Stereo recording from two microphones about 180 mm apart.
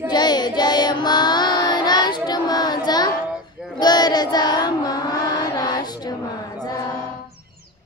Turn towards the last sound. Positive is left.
turn(degrees=20)  # may be behind; listen again after turning